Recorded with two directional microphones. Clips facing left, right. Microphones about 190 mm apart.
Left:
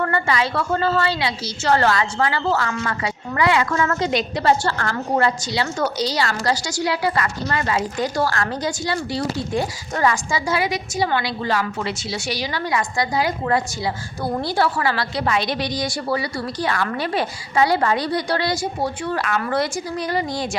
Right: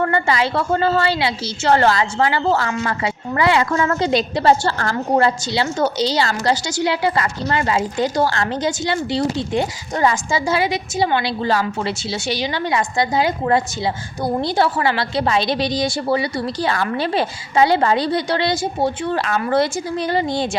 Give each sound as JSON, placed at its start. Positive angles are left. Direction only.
{"t": 0.0, "sound": "a woman's voice", "side_deg": -25}